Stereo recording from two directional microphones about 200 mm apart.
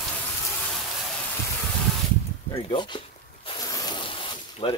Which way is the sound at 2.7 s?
25° left (ahead or behind).